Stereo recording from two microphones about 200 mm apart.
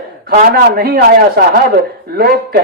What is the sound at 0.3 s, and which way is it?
Speech, 45° right (ahead or behind).